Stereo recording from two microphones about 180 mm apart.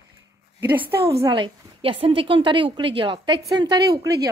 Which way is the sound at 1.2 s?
25° right (ahead or behind).